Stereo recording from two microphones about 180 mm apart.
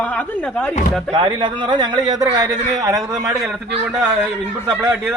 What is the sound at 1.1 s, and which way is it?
A man's voice, 25° right (ahead or behind).